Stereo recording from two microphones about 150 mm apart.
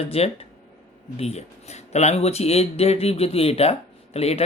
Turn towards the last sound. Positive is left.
turn(degrees=45)  # may be behind; listen again after turning